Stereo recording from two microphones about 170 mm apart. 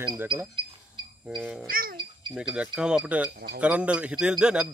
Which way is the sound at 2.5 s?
5° right (ahead or behind).